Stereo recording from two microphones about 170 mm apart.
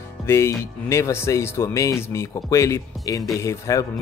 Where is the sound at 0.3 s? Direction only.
15° left (ahead or behind).